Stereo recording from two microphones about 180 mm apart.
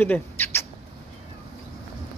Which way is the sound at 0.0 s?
10° left (ahead or behind).